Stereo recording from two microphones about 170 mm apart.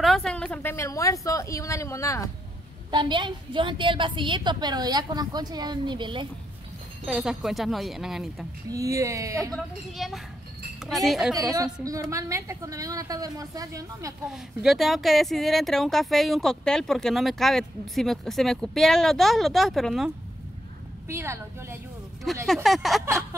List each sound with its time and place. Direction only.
0.0 s speech: centre (ahead or behind); by 2.2 s 20° left (ahead or behind)
2.9 s a woman's voice: 25° right (ahead or behind)
7.1 s speech: centre (ahead or behind)
8.6 s a woman's voice: 20° right (ahead or behind)
9.5 s speech: centre (ahead or behind)
11.5 s a woman's voice: 20° right (ahead or behind)
14.2 s speech: 5° right (ahead or behind)
21.1 s a woman's voice: 15° right (ahead or behind)
22.5 s speech: centre (ahead or behind)